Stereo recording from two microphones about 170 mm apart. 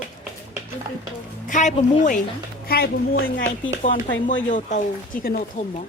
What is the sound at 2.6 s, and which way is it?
Speech, 65° left (ahead or behind).